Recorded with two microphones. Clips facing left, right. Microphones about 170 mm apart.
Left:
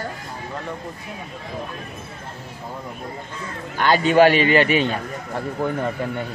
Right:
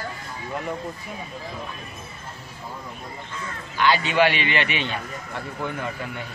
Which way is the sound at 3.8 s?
45° left (ahead or behind).